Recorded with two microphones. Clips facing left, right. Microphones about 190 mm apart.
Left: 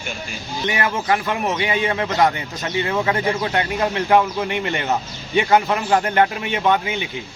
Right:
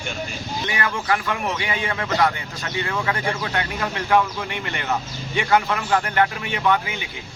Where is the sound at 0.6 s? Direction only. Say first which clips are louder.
Left 4 dB; 20° left (ahead or behind).